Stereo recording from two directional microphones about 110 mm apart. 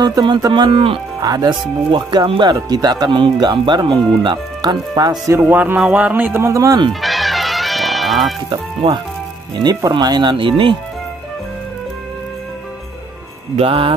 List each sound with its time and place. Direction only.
0.0 s speech: 40° right (ahead or behind)
1.2 s speech: 35° right (ahead or behind)
5.3 s speech: 20° right (ahead or behind)
6.9 s music: centre (ahead or behind)
8.5 s speech: 45° right (ahead or behind)
13.6 s speech: 55° right (ahead or behind)